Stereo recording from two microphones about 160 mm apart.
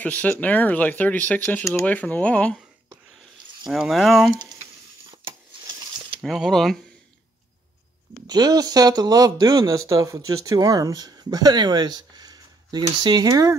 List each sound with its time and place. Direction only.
0.0 s speech: 10° left (ahead or behind)
3.6 s speech: 5° right (ahead or behind)
5.2 s a sound: 30° right (ahead or behind)
6.2 s speech: centre (ahead or behind)
8.3 s speech: 25° right (ahead or behind)